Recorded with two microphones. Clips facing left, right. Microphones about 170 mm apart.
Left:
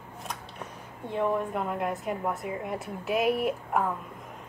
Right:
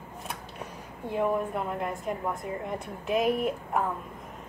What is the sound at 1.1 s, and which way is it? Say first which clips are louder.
A woman's voice: even; centre (ahead or behind).